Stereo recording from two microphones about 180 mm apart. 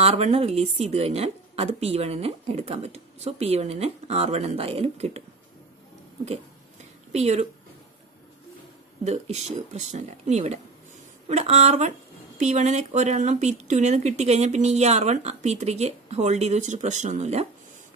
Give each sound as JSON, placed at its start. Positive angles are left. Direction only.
{"t": 0.0, "sound": "a woman's voice", "side_deg": -35}
{"t": 7.1, "sound": "a woman's voice", "side_deg": -40}
{"t": 9.0, "sound": "a woman's voice", "side_deg": -40}